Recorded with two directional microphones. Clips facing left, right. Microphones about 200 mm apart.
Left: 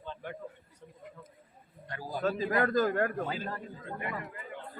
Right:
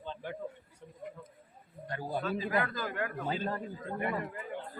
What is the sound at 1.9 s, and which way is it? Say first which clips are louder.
Speech: right 3 dB; 25° right (ahead or behind).